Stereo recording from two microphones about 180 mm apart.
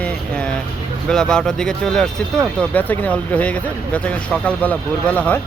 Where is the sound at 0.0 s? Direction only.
5° left (ahead or behind).